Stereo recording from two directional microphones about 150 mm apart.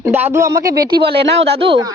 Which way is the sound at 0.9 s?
35° right (ahead or behind).